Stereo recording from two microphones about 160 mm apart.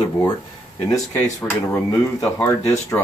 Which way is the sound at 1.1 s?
15° left (ahead or behind).